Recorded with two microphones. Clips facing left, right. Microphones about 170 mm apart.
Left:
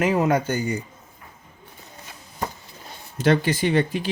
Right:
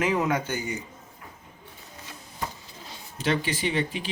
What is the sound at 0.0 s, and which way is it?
Speech, 35° left (ahead or behind).